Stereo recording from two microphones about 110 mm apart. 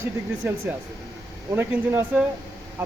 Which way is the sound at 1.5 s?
20° right (ahead or behind).